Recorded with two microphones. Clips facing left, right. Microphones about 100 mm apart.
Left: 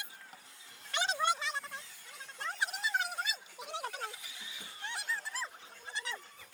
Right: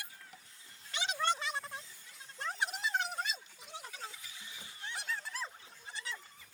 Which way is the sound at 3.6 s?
70° left (ahead or behind).